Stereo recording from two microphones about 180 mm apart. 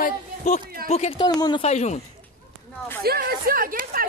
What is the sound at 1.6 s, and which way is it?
Speech, 40° left (ahead or behind).